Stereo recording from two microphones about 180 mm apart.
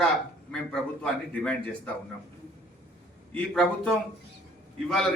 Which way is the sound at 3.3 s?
5° left (ahead or behind).